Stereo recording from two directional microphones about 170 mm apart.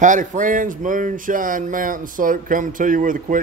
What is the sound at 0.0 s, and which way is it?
Speech, 45° right (ahead or behind).